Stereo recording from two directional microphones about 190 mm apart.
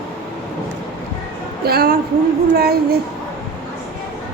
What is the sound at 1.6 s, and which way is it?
A woman's voice, 50° right (ahead or behind).